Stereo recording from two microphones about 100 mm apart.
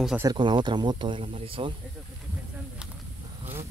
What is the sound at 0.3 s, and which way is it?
Speech, 50° right (ahead or behind).